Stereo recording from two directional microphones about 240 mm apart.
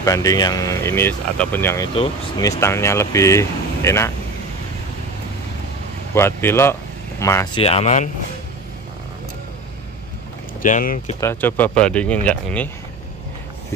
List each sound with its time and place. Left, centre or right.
0.0 s speech: centre
6.1 s speech: centre
7.6 s speech: left
10.6 s speech: left
11.1 s speech: centre